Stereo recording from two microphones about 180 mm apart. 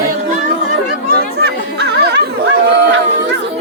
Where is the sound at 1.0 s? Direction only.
65° right (ahead or behind).